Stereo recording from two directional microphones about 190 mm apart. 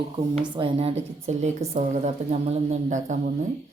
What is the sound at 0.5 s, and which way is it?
A woman's voice, 30° right (ahead or behind).